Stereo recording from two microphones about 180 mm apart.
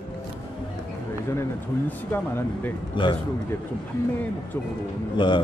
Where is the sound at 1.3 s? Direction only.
15° left (ahead or behind).